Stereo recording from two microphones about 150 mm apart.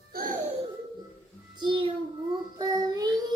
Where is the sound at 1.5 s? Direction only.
30° right (ahead or behind).